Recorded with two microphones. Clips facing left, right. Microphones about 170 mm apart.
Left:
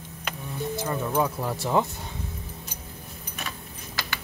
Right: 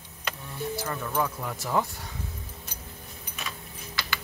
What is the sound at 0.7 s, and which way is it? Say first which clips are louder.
Speech: left 5 dB; 20° left (ahead or behind).